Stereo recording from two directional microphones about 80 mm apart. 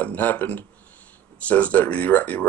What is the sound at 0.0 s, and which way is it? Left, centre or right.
Speech, left.